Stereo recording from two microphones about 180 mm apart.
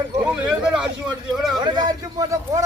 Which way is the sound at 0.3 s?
5° right (ahead or behind).